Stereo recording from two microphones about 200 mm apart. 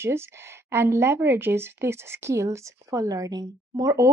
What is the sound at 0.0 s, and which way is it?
Speech, 10° right (ahead or behind).